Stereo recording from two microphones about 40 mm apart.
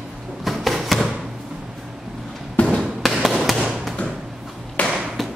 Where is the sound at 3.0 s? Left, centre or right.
Centre.